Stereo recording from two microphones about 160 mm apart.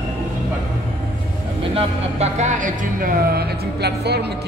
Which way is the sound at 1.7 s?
45° right (ahead or behind).